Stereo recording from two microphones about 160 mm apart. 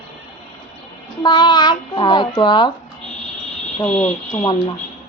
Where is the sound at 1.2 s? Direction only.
30° left (ahead or behind).